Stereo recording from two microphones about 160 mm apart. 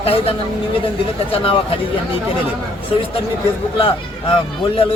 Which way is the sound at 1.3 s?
35° left (ahead or behind).